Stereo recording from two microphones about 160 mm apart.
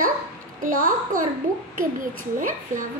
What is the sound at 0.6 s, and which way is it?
Speech, 60° right (ahead or behind).